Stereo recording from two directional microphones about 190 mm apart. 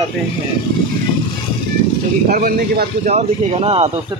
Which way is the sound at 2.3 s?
50° right (ahead or behind).